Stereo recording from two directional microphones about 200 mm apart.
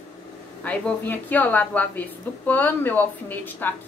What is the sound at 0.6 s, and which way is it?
A woman's voice, 10° left (ahead or behind).